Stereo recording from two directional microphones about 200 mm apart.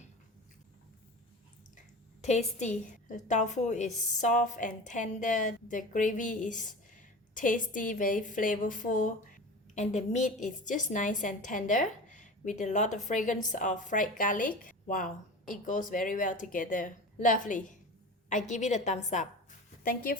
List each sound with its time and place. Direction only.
2.2 s a woman's voice: 35° left (ahead or behind)